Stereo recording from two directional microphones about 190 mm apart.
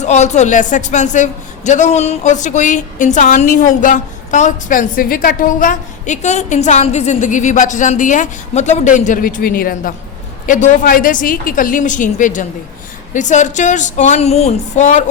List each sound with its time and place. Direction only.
0.0 s a woman's voice: 35° left (ahead or behind)